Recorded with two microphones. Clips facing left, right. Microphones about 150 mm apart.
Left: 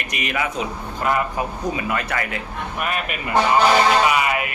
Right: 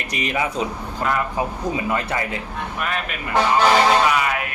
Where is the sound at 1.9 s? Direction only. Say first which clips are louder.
Right 1 dB; 25° right (ahead or behind).